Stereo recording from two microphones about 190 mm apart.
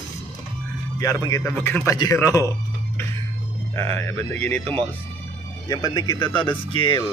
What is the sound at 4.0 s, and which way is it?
Speech, 15° left (ahead or behind).